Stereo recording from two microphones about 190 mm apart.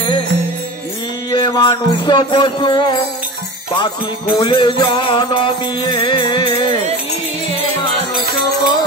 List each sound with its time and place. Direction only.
1.3 s music: 25° left (ahead or behind)